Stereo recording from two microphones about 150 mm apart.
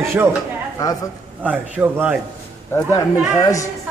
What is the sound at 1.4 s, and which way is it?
Speech, 10° right (ahead or behind).